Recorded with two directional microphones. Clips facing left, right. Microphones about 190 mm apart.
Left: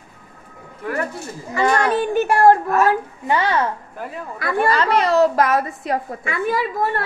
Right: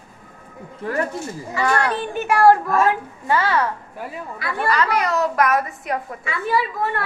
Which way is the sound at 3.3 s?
20° left (ahead or behind).